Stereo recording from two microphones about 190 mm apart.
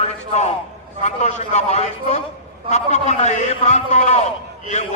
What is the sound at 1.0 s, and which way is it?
A man's voice, 35° left (ahead or behind).